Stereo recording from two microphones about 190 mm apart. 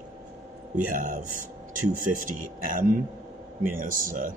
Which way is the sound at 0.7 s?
45° right (ahead or behind).